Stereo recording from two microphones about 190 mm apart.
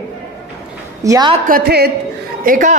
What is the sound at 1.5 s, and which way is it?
A woman's voice, 55° right (ahead or behind).